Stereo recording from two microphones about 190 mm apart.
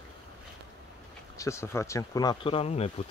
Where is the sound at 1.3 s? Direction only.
15° left (ahead or behind); by 2.9 s 30° left (ahead or behind).